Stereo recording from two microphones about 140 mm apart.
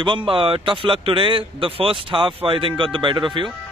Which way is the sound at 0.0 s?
35° right (ahead or behind).